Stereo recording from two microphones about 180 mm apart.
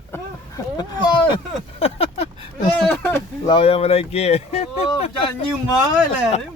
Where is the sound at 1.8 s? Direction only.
35° left (ahead or behind).